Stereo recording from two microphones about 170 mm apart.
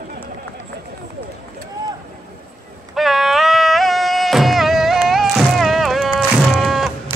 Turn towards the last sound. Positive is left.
turn(degrees=0)  # may be behind; listen again after turning